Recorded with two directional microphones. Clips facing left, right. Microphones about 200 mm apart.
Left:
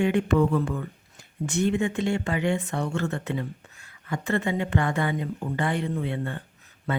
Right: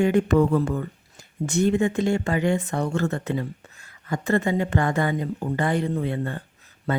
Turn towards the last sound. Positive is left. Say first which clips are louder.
# right 3 dB
turn(degrees=-40)  # may be behind; listen again after turning